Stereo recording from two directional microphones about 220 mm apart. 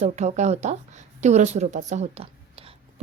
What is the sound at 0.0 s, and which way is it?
A woman's voice, 30° right (ahead or behind).